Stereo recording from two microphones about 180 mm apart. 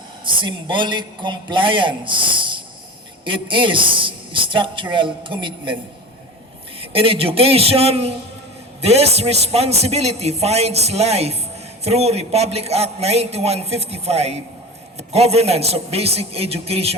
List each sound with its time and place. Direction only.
0.3 s a man's voice: 30° right (ahead or behind)
6.7 s a man's voice: 30° right (ahead or behind)